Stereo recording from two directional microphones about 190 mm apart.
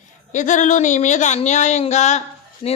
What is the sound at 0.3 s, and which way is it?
A woman's voice, 40° left (ahead or behind).